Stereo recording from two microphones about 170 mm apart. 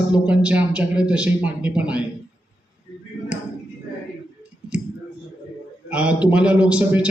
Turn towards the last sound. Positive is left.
turn(degrees=-5)  # may be behind; listen again after turning